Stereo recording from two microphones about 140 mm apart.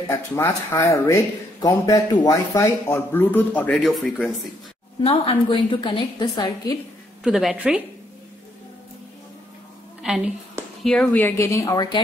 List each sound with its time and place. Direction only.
0.4 s speech: 20° left (ahead or behind)
3.7 s speech: centre (ahead or behind)
5.0 s a woman's voice: 40° left (ahead or behind)
7.2 s speech: 5° right (ahead or behind)
10.0 s a woman's voice: 5° right (ahead or behind)
11.1 s speech: 20° left (ahead or behind)